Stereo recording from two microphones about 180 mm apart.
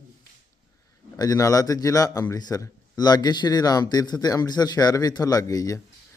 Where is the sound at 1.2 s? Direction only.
20° left (ahead or behind).